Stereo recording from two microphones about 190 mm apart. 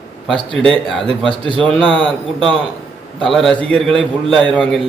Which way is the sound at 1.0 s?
25° right (ahead or behind).